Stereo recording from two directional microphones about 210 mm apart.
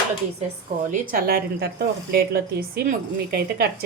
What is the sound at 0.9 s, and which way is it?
Speech, 45° right (ahead or behind).